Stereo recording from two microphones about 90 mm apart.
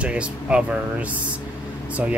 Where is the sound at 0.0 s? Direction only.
10° right (ahead or behind).